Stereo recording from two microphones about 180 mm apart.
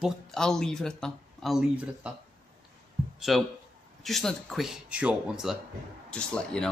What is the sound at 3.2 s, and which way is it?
Speech, centre (ahead or behind).